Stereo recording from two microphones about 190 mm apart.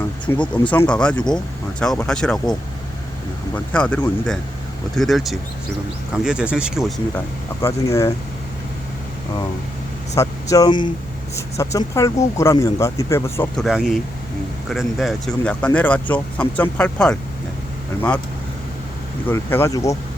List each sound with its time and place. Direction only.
0.3 s speech: 15° left (ahead or behind)
7.6 s speech: 15° left (ahead or behind)
10.2 s speech: 20° left (ahead or behind)
13.6 s speech: centre (ahead or behind)
19.3 s speech: 15° left (ahead or behind)